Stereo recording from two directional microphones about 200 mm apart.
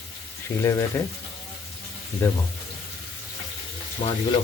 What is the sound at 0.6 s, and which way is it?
Speech, 15° left (ahead or behind).